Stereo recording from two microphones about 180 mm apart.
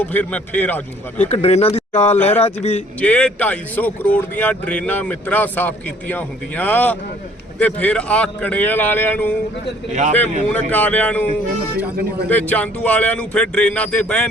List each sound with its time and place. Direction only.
0.0 s speech: 10° left (ahead or behind)
1.3 s speech: 35° left (ahead or behind)
3.0 s speech: 5° left (ahead or behind)
9.9 s a man's voice: 40° right (ahead or behind)
10.5 s speech: 10° left (ahead or behind)
12.3 s speech: 10° left (ahead or behind)